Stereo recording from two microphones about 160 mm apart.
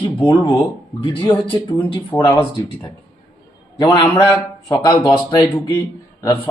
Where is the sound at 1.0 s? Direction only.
30° left (ahead or behind).